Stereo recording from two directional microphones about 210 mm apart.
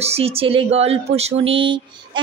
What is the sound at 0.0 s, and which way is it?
Speech, 30° right (ahead or behind).